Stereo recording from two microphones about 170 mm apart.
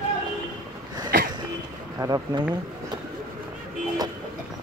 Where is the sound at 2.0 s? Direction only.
20° right (ahead or behind).